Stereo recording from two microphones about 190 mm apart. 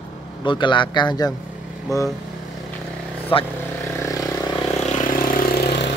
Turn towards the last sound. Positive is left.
turn(degrees=55)  # may be behind; listen again after turning